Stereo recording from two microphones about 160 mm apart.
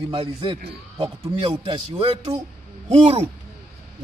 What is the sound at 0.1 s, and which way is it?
A man's voice, 35° right (ahead or behind).